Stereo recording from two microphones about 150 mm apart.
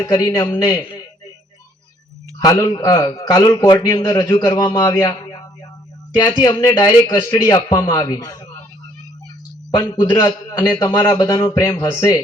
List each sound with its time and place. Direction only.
0.0 s a man's voice: 25° left (ahead or behind)
2.4 s a man's voice: 25° left (ahead or behind)
10.2 s a man's voice: 25° left (ahead or behind)